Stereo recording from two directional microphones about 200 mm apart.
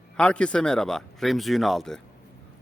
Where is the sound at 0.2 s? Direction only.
5° left (ahead or behind).